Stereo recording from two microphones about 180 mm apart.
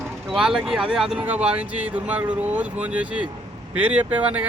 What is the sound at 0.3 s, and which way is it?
Speech, 5° right (ahead or behind).